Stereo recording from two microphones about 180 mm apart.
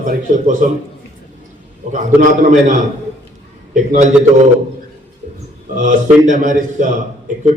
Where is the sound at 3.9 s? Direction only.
40° right (ahead or behind).